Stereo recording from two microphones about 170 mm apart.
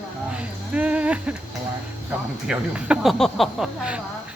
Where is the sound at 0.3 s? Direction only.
5° right (ahead or behind).